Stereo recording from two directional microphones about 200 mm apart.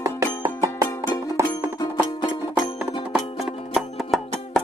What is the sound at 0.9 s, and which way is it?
Music, 15° left (ahead or behind).